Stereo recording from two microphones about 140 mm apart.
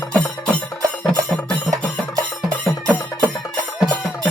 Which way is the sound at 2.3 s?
Centre (ahead or behind).